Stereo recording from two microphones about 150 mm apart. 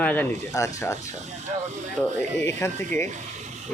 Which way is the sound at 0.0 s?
10° left (ahead or behind).